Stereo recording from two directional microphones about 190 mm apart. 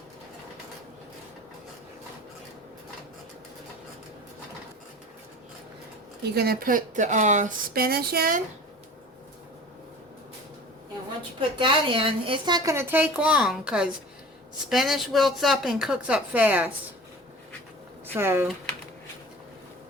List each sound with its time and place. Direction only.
6.2 s speech: 55° right (ahead or behind)
11.3 s a woman's voice: 25° right (ahead or behind); by 16.7 s 10° right (ahead or behind)
18.1 s a woman's voice: 15° right (ahead or behind)